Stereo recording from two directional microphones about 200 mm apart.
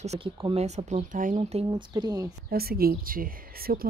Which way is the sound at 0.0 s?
35° right (ahead or behind).